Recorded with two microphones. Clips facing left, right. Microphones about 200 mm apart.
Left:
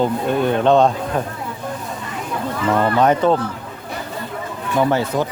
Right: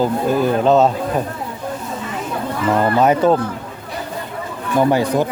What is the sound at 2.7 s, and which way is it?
Speech, 10° right (ahead or behind).